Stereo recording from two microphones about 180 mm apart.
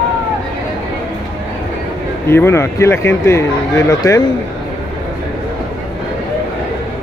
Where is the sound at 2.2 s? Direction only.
15° left (ahead or behind).